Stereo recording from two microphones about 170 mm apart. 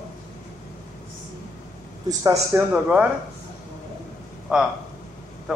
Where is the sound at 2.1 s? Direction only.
20° right (ahead or behind).